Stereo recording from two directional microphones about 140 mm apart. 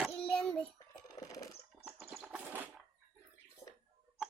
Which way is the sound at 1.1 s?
25° left (ahead or behind).